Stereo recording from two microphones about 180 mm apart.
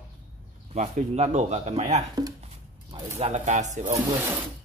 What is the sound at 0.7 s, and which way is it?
Speech, 40° right (ahead or behind).